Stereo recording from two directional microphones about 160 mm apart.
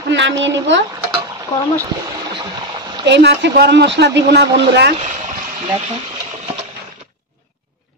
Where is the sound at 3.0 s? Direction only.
90° right.